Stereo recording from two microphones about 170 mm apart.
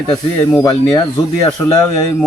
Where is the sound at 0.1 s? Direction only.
20° left (ahead or behind).